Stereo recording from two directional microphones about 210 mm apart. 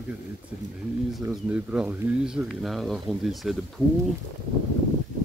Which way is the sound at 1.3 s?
5° right (ahead or behind).